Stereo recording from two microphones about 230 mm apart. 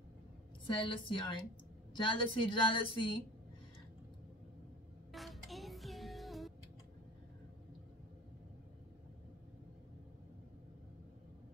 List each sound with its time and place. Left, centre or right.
0.7 s a woman's voice: left
5.1 s music: centre